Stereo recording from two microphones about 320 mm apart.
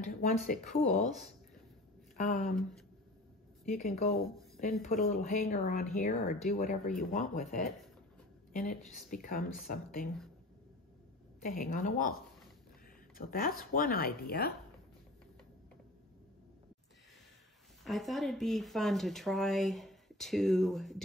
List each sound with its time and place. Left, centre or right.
0.0 s speech: left
3.6 s speech: left
11.4 s speech: left
13.3 s speech: left
17.8 s speech: centre